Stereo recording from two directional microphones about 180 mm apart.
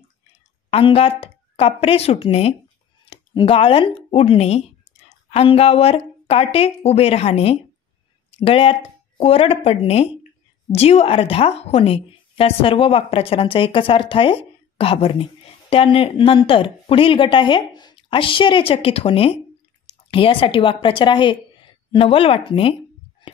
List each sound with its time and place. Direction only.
0.7 s a woman's voice: 35° left (ahead or behind)